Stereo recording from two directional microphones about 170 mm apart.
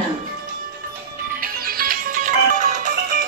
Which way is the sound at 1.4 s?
60° right (ahead or behind).